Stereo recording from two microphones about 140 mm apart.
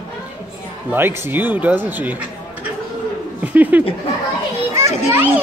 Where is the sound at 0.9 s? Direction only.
15° right (ahead or behind).